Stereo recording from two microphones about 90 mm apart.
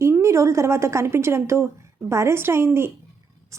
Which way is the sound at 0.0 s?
30° right (ahead or behind).